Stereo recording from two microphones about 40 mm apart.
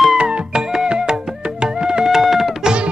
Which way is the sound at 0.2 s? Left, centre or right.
Right.